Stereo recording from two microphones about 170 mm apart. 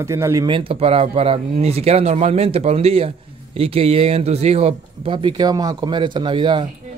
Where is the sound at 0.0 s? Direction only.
15° right (ahead or behind).